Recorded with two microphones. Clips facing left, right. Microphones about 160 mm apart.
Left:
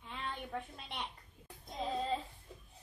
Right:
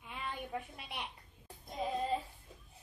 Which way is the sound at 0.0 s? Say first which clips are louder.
Even; 10° right (ahead or behind).